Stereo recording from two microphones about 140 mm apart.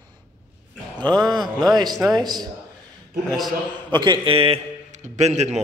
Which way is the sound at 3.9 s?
30° right (ahead or behind).